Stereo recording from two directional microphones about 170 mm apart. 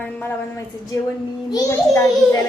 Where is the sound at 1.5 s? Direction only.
20° left (ahead or behind).